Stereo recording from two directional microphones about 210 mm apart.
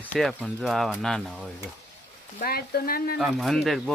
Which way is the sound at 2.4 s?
45° left (ahead or behind).